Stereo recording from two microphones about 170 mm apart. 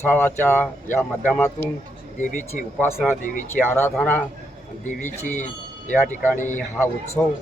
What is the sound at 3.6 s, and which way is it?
Speech, 60° left (ahead or behind).